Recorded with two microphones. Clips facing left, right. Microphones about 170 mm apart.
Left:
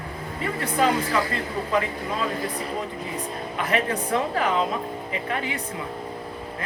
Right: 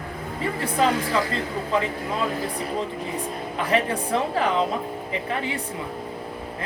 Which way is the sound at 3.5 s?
30° right (ahead or behind).